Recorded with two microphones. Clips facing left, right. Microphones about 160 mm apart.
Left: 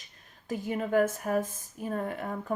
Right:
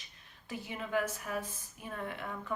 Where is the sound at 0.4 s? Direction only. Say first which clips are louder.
Left 9 dB; 45° left (ahead or behind).